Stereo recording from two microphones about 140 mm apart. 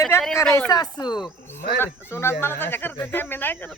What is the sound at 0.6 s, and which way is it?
Speech, 30° left (ahead or behind).